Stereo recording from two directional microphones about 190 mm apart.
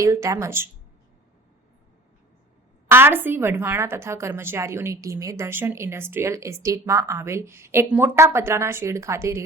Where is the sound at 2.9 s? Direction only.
10° right (ahead or behind).